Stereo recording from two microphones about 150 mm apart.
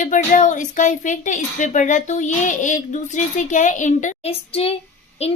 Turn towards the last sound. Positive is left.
turn(degrees=40)  # may be behind; listen again after turning